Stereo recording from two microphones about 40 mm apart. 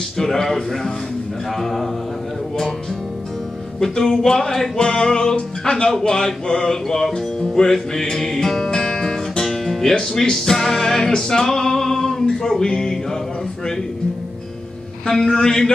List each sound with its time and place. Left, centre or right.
0.2 s music: centre
1.6 s a man's voice: centre
3.8 s music: centre
15.0 s music: centre